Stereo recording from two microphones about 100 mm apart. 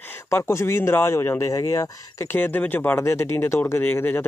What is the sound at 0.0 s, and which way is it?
Speech, 25° left (ahead or behind).